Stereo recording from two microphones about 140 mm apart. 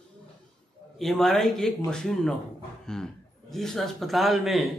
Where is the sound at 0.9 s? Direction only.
Centre (ahead or behind).